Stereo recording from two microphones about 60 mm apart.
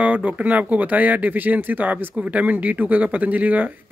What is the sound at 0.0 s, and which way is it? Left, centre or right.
Speech, right.